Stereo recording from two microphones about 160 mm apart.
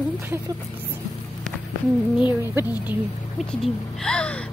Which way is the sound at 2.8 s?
10° right (ahead or behind).